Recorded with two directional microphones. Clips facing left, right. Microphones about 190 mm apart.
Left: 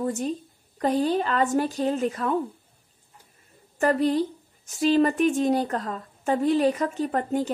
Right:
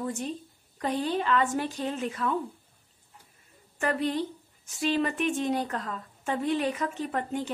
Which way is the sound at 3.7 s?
40° left (ahead or behind).